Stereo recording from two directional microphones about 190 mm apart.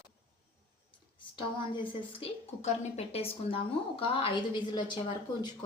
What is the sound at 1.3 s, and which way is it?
A woman's voice, 25° left (ahead or behind).